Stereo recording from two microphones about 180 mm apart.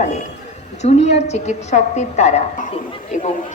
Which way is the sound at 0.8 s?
40° left (ahead or behind).